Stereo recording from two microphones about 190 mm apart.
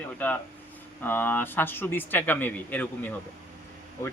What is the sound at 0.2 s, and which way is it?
Speech, 10° left (ahead or behind).